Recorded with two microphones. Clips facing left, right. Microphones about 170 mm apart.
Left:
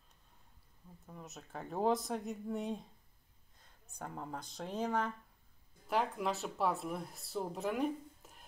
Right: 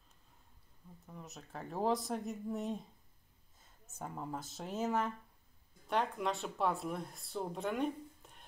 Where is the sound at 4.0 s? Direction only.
5° right (ahead or behind).